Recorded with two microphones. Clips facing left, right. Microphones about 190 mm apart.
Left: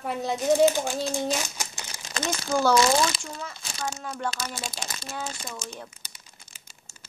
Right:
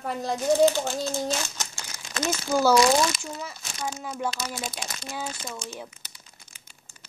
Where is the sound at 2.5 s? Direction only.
5° right (ahead or behind).